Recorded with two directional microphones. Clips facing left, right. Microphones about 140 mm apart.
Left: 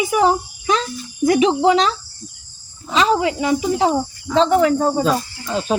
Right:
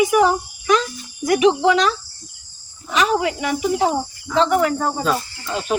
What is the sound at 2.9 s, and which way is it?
A child's voice, 25° left (ahead or behind).